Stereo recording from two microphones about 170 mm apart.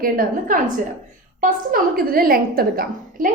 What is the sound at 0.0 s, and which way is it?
A woman's voice, 55° right (ahead or behind).